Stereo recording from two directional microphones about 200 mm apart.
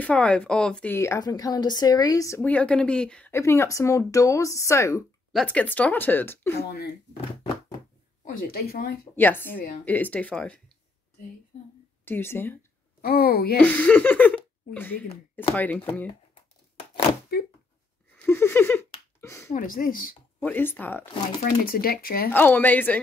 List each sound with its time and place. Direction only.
0.0 s speech: 5° left (ahead or behind)
5.3 s speech: 5° left (ahead or behind)
8.3 s speech: 50° left (ahead or behind)
9.1 s speech: 10° left (ahead or behind)
12.0 s speech: 10° left (ahead or behind)
13.0 s speech: 50° left (ahead or behind)
13.6 s speech: 5° left (ahead or behind)
18.1 s a sound: 10° left (ahead or behind)
19.5 s speech: 45° left (ahead or behind)
20.3 s speech: 10° left (ahead or behind)
21.4 s speech: 45° left (ahead or behind)
22.3 s speech: 10° left (ahead or behind)